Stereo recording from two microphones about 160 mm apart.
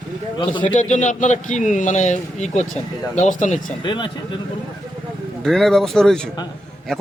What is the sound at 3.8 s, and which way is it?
Speech, 30° left (ahead or behind).